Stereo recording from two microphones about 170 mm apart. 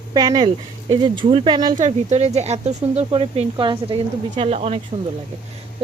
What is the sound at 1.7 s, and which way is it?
Speech, 45° right (ahead or behind).